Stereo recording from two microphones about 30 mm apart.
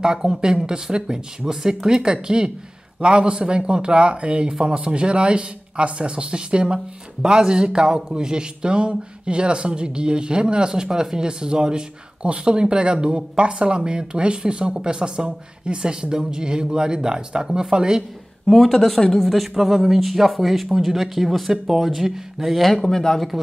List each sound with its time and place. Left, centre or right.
0.0 s speech: right
3.0 s speech: right
18.5 s speech: centre
19.3 s speech: centre
22.6 s speech: centre